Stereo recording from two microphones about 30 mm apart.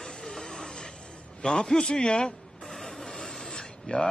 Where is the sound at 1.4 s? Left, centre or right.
Left.